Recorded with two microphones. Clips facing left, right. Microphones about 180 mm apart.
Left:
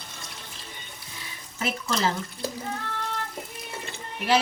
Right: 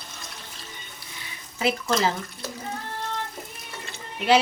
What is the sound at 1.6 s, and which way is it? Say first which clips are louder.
Speech: right 4 dB; 10° right (ahead or behind).